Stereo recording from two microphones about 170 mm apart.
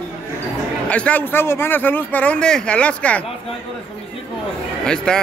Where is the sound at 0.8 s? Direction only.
5° left (ahead or behind).